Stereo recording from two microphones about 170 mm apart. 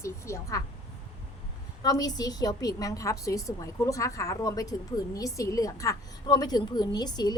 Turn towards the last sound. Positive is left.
turn(degrees=25)  # may be behind; listen again after turning